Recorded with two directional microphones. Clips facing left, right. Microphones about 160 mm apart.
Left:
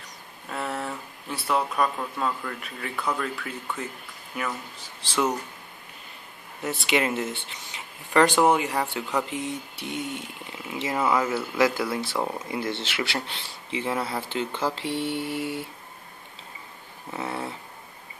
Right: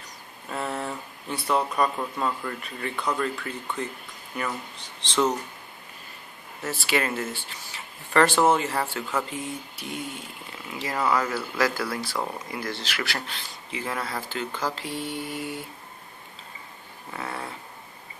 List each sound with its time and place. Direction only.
0.5 s speech: centre (ahead or behind)
6.9 s speech: 20° left (ahead or behind)
17.1 s speech: 20° left (ahead or behind)